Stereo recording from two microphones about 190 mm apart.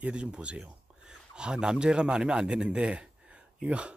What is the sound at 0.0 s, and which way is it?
Speech, 5° right (ahead or behind).